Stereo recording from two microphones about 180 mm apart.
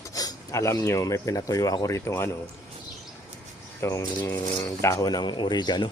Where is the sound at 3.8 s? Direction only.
15° left (ahead or behind).